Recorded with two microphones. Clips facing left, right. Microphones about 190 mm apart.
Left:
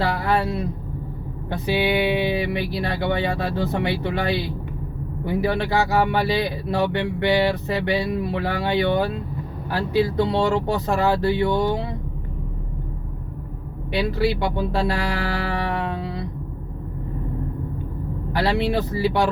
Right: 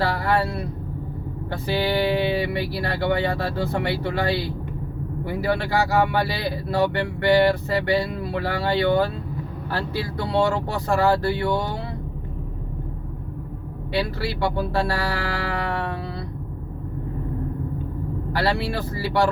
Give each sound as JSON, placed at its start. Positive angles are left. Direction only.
{"t": 0.0, "sound": "speech", "side_deg": 20}
{"t": 13.9, "sound": "speech", "side_deg": 20}
{"t": 18.3, "sound": "speech", "side_deg": 20}